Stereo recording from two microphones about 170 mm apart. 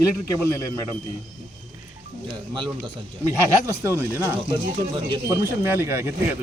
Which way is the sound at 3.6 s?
15° right (ahead or behind).